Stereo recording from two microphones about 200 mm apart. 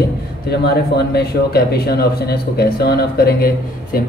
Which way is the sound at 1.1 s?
50° left (ahead or behind).